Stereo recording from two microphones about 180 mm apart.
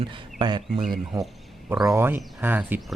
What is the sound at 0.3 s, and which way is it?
Speech, 25° right (ahead or behind).